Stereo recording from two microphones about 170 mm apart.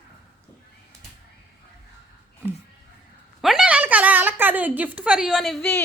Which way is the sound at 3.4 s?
Centre (ahead or behind).